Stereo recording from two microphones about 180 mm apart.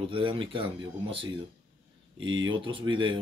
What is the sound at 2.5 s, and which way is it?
Speech, 30° right (ahead or behind).